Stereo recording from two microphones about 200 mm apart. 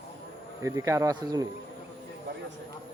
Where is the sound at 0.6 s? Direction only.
15° right (ahead or behind).